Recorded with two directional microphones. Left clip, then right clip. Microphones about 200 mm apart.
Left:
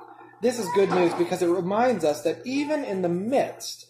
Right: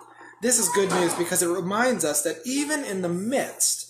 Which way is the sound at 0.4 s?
15° right (ahead or behind).